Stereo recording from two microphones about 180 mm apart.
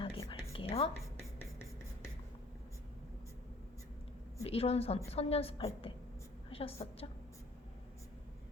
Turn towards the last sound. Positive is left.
turn(degrees=30)  # may be behind; listen again after turning